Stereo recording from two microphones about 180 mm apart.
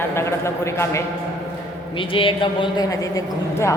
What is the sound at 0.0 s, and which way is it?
A man's voice, 15° left (ahead or behind).